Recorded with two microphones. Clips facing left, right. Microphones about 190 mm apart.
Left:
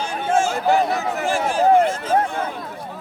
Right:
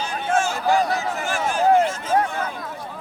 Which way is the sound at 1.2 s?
30° left (ahead or behind).